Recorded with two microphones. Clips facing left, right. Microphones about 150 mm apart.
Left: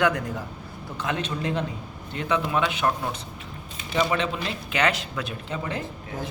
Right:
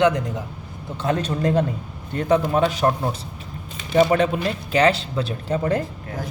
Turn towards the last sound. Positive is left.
turn(degrees=-40)  # may be behind; listen again after turning